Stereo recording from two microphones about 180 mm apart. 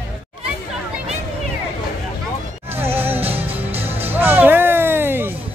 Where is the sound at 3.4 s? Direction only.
35° right (ahead or behind).